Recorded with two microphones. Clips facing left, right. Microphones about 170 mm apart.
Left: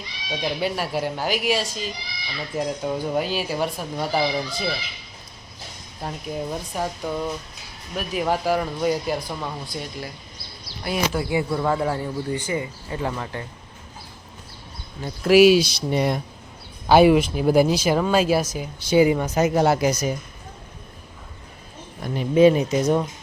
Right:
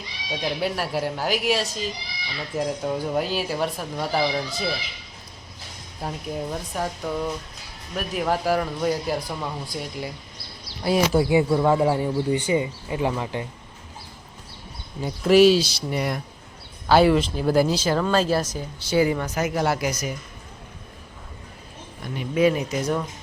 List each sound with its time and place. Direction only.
0.3 s speech: centre (ahead or behind)
6.0 s speech: centre (ahead or behind)
10.8 s speech: 35° right (ahead or behind)
11.3 s speech: 15° right (ahead or behind)
15.2 s speech: 5° left (ahead or behind); by 20.1 s 25° left (ahead or behind)
22.1 s speech: 30° left (ahead or behind)